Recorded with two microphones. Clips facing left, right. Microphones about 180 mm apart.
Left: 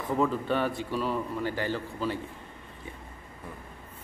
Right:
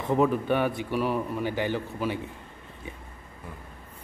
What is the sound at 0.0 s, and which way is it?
A man's voice, 20° right (ahead or behind).